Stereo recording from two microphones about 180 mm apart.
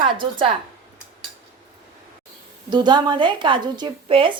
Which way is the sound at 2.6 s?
25° right (ahead or behind).